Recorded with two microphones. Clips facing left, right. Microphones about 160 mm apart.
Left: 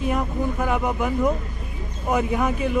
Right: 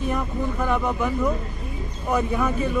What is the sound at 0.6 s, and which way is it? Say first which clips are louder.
Speech: right 2 dB; 10° left (ahead or behind).